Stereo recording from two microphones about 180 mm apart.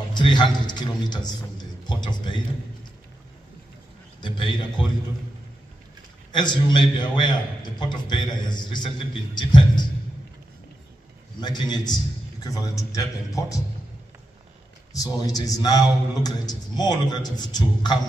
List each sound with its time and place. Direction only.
0.1 s a man's voice: 25° left (ahead or behind)
6.3 s a man's voice: 25° left (ahead or behind)
11.4 s a man's voice: 25° left (ahead or behind)
14.9 s a man's voice: 20° left (ahead or behind)